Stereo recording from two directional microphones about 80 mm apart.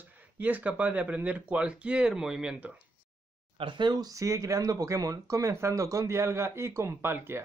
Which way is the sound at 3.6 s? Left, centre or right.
Right.